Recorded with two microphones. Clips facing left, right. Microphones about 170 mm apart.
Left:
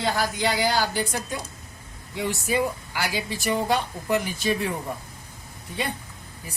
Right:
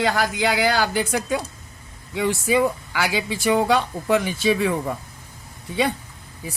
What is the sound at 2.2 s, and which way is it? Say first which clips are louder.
Speech: right 5 dB; 90° right.